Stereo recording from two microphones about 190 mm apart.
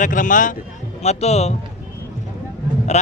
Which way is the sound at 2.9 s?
35° left (ahead or behind).